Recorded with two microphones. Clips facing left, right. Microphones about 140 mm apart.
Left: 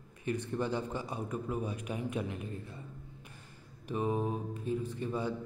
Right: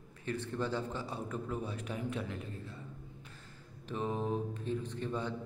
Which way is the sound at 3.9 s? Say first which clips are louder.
Left 2 dB; 10° left (ahead or behind).